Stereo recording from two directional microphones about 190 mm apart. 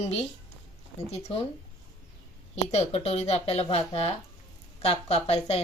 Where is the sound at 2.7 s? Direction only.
30° left (ahead or behind).